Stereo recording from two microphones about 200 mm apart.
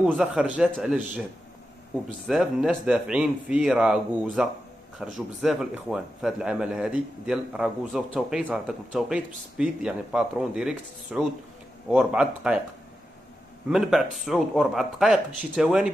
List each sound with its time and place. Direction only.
0.0 s a man's voice: centre (ahead or behind)
13.7 s a man's voice: centre (ahead or behind)